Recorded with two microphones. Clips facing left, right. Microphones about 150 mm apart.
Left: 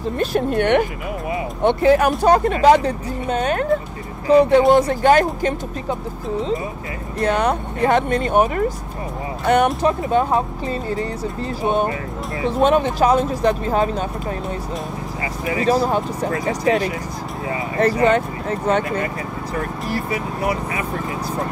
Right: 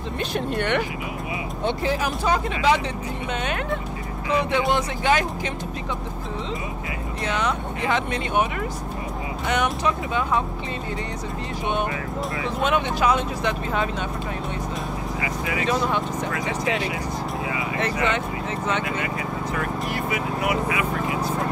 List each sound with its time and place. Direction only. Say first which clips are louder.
0.2 s speech: left 7 dB; 45° left (ahead or behind)
7.2 s speech: left 7 dB; 45° left (ahead or behind)
9.8 s speech: left 6 dB; 40° left (ahead or behind)
11.6 s speech: left 6 dB; 35° left (ahead or behind)
15.4 s speech: left 7 dB; 35° left (ahead or behind)